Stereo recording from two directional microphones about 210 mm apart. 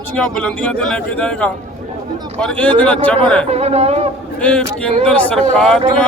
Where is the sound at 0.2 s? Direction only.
5° left (ahead or behind).